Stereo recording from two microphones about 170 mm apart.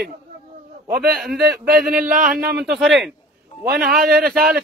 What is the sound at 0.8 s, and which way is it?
Speech, 60° right (ahead or behind).